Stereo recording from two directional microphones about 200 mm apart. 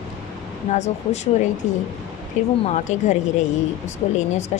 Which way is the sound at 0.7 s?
35° left (ahead or behind).